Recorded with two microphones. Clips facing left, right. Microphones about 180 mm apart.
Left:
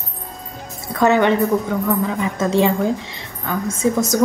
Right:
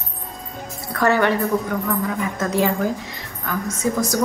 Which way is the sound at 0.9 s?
20° left (ahead or behind).